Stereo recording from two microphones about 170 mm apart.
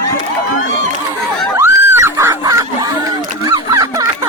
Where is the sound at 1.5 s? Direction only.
15° right (ahead or behind).